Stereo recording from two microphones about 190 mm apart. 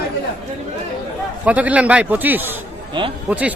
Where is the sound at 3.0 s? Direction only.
25° right (ahead or behind).